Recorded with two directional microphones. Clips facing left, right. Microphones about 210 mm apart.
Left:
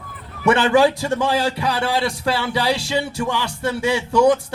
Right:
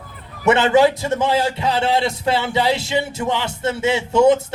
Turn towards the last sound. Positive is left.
turn(degrees=-25)  # may be behind; listen again after turning